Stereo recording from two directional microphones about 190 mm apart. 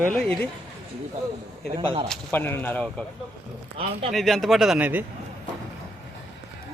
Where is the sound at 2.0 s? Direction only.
10° left (ahead or behind).